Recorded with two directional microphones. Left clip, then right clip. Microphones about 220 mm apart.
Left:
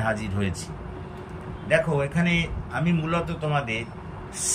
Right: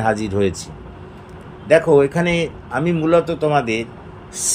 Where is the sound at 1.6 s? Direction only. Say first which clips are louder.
Right 10 dB; 30° right (ahead or behind).